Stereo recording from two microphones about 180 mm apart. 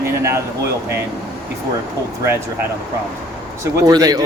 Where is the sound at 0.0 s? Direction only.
15° right (ahead or behind).